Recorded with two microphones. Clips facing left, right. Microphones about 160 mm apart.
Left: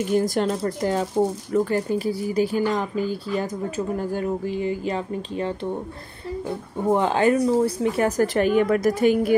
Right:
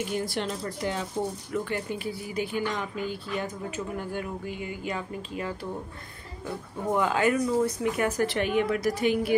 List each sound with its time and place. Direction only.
0.1 s speech: 45° left (ahead or behind)
6.9 s speech: 30° left (ahead or behind)